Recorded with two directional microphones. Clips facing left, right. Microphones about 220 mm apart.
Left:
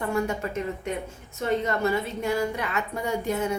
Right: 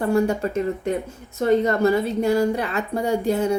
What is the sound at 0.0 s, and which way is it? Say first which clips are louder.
Speech: right 7 dB; 35° right (ahead or behind).